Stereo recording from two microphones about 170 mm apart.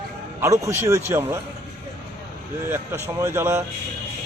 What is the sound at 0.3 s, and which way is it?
A man's voice, 15° right (ahead or behind).